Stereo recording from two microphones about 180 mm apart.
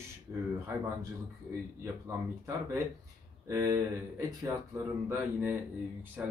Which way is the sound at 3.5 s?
20° right (ahead or behind).